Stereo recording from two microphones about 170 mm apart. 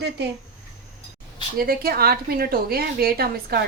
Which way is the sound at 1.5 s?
60° right (ahead or behind).